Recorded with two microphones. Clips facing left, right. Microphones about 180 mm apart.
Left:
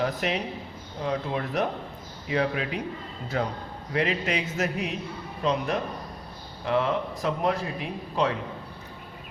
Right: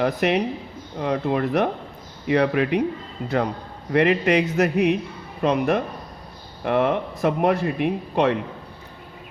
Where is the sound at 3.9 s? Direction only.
60° right (ahead or behind).